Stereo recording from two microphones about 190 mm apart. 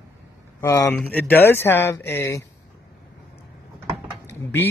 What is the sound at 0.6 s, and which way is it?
Speech, 15° left (ahead or behind).